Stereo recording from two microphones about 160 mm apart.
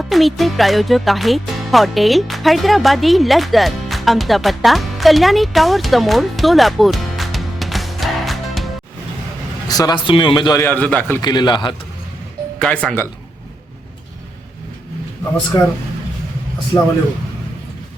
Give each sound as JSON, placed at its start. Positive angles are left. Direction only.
{"t": 0.0, "sound": "speech", "side_deg": 0}
{"t": 9.6, "sound": "a man's voice", "side_deg": 25}
{"t": 10.6, "sound": "a man's voice", "side_deg": 10}
{"t": 11.2, "sound": "a man's voice", "side_deg": 25}
{"t": 12.5, "sound": "a man's voice", "side_deg": 5}
{"t": 15.5, "sound": "a man's voice", "side_deg": 25}